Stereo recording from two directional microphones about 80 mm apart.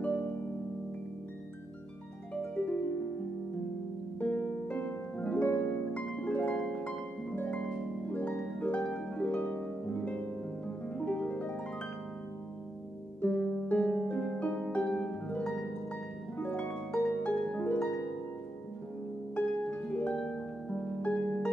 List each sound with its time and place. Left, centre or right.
0.0 s harp: left
2.5 s harp: centre
4.2 s harp: centre
13.7 s harp: centre
19.3 s harp: centre
20.2 s harp: centre